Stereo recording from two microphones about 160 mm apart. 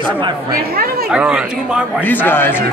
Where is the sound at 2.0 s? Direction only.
10° left (ahead or behind).